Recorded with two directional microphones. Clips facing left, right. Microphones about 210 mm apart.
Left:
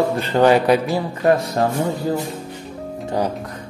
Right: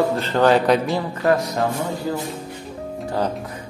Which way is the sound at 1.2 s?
20° left (ahead or behind).